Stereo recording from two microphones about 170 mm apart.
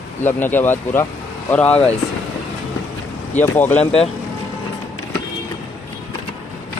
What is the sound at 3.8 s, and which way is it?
Speech, 35° left (ahead or behind).